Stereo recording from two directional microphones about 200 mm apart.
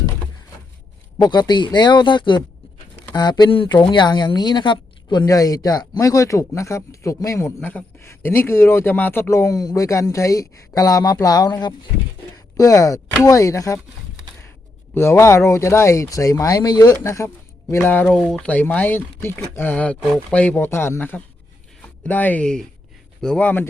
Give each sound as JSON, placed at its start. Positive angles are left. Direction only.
{"t": 1.2, "sound": "speech", "side_deg": 20}
{"t": 14.9, "sound": "speech", "side_deg": 15}